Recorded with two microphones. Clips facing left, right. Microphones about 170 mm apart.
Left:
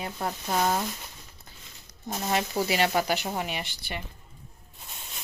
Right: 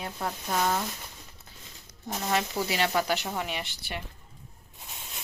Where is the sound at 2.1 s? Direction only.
15° left (ahead or behind); by 4.0 s centre (ahead or behind).